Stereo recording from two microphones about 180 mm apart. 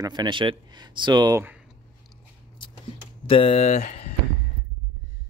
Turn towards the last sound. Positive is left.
turn(degrees=45)  # may be behind; listen again after turning